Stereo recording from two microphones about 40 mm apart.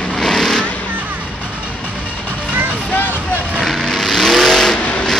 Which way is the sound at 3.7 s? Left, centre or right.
Centre.